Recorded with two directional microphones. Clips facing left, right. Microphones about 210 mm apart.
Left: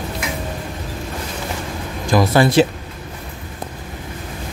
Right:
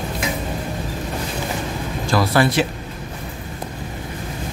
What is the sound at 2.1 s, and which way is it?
Speech, 20° left (ahead or behind).